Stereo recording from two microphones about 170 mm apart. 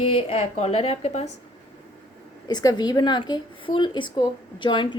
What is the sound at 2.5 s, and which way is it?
A woman's voice, 25° left (ahead or behind).